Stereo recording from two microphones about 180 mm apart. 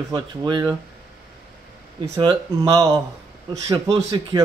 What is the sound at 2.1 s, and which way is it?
Speech, 25° right (ahead or behind).